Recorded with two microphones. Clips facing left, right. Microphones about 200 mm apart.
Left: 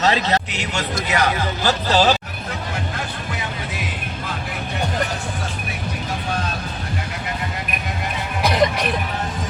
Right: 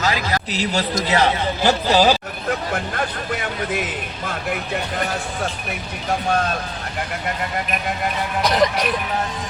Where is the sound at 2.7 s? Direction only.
55° right (ahead or behind).